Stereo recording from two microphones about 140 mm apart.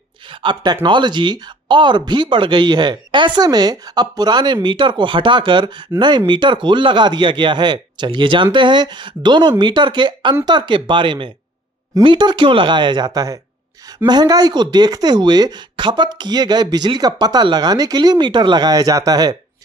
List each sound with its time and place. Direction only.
0.3 s speech: 35° right (ahead or behind)